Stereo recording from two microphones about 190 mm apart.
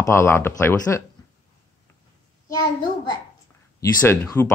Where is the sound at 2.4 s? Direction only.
20° left (ahead or behind).